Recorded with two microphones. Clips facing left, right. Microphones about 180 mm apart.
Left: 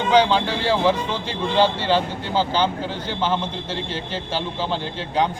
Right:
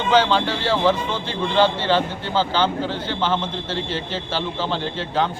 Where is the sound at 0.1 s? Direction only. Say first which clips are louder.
Even; 10° left (ahead or behind).